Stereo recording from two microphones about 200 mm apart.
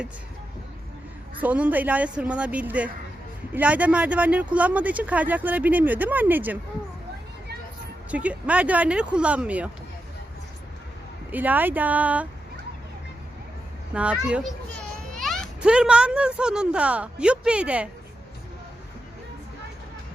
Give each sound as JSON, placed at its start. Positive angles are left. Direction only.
{"t": 1.4, "sound": "speech", "side_deg": -5}
{"t": 8.1, "sound": "speech", "side_deg": -5}
{"t": 11.3, "sound": "speech", "side_deg": -10}
{"t": 13.9, "sound": "a child's voice", "side_deg": -5}